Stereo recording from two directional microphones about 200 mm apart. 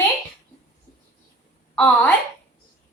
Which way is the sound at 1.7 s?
5° left (ahead or behind).